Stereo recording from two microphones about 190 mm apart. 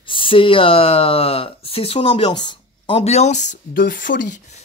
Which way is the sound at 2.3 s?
25° left (ahead or behind).